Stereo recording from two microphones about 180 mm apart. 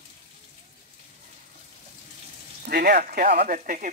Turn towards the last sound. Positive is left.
turn(degrees=-45)  # may be behind; listen again after turning